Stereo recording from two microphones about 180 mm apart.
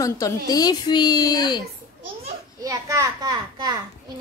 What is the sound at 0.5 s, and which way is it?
A child's voice, 20° left (ahead or behind).